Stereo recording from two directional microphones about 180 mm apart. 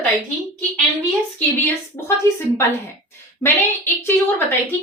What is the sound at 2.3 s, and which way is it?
Speech, 15° left (ahead or behind).